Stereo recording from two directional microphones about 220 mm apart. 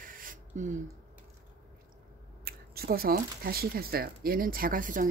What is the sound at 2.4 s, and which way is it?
Speech, 45° right (ahead or behind).